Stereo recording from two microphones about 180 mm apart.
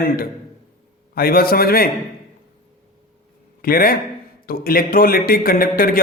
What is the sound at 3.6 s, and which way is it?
A man's voice, 55° left (ahead or behind).